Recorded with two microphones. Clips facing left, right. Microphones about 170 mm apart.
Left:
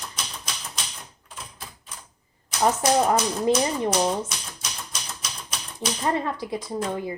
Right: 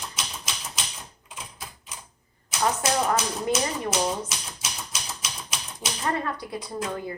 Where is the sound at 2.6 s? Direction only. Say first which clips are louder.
Left 4 dB; 30° left (ahead or behind).